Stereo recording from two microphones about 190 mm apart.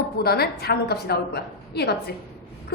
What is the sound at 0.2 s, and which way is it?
A woman's voice, 55° left (ahead or behind).